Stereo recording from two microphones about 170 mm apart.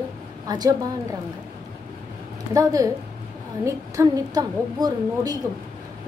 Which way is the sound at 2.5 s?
20° right (ahead or behind).